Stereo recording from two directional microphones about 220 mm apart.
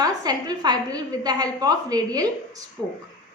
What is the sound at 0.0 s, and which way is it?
A woman's voice, 15° right (ahead or behind).